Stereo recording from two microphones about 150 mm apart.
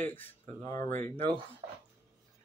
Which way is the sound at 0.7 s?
55° right (ahead or behind).